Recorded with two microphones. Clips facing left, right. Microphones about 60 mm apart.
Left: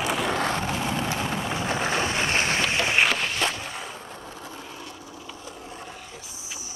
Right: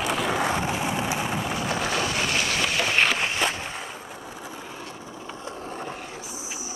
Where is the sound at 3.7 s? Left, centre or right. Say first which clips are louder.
Right 1 dB; centre; by 6.2 s right.